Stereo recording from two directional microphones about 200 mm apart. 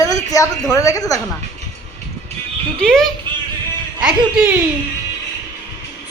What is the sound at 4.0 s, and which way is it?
Speech, 5° right (ahead or behind).